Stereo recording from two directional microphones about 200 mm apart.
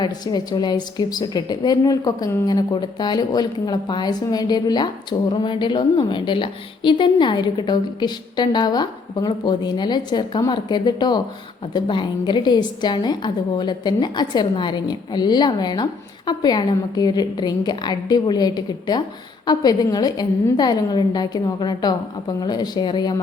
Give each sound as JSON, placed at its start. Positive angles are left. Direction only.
{"t": 0.0, "sound": "a woman's voice", "side_deg": 20}